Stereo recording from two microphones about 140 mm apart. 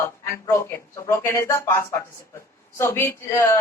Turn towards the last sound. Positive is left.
turn(degrees=20)  # may be behind; listen again after turning